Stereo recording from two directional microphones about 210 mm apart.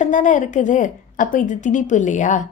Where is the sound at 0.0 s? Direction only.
35° left (ahead or behind).